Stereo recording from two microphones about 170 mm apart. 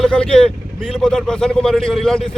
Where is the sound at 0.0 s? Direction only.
5° left (ahead or behind).